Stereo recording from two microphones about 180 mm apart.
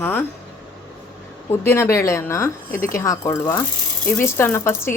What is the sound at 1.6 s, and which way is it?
A woman's voice, 15° left (ahead or behind).